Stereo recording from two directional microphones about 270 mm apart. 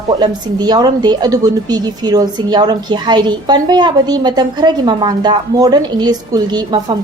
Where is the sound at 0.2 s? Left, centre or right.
Centre.